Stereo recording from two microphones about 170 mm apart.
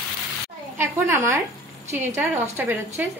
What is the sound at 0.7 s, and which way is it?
A woman's voice, 15° right (ahead or behind).